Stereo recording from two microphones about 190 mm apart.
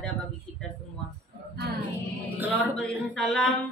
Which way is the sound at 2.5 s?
5° left (ahead or behind).